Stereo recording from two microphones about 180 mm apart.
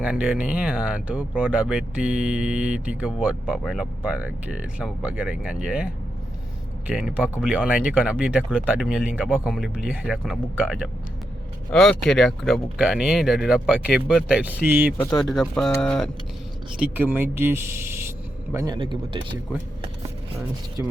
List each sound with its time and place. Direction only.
0.0 s speech: 5° right (ahead or behind)
14.9 s speech: 10° left (ahead or behind)
15.3 s speech: centre (ahead or behind)
16.7 s speech: 10° right (ahead or behind); by 19.2 s 25° right (ahead or behind)